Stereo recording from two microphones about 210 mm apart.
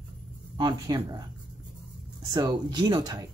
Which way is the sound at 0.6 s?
20° right (ahead or behind).